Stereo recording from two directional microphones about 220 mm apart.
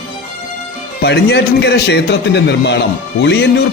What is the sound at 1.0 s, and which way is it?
A man's voice, 50° left (ahead or behind).